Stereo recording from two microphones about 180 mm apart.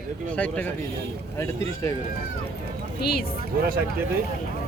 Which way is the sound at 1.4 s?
15° left (ahead or behind).